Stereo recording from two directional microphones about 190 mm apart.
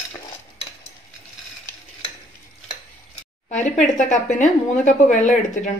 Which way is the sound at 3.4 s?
40° left (ahead or behind).